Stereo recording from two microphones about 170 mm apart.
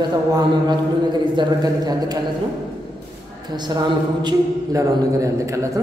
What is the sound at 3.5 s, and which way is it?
A man's voice, 25° right (ahead or behind).